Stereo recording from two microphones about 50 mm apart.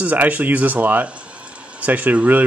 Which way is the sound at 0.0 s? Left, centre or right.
Right.